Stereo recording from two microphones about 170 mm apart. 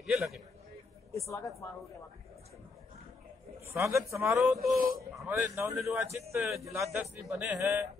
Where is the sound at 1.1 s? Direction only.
20° left (ahead or behind).